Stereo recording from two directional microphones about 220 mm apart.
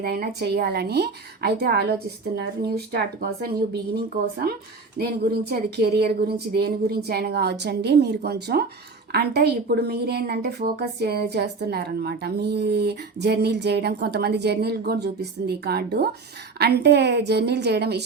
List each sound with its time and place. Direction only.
0.0 s a woman's voice: 45° right (ahead or behind)